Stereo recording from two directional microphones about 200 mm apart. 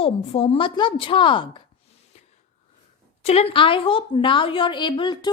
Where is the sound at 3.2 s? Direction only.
30° left (ahead or behind).